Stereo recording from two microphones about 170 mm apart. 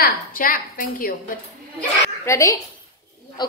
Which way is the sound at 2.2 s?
20° left (ahead or behind).